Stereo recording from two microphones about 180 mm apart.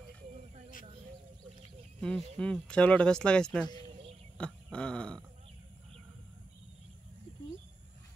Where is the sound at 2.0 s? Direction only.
5° left (ahead or behind).